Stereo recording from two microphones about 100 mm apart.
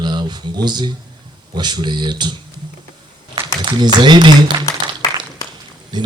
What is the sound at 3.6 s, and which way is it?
Speech, 45° right (ahead or behind).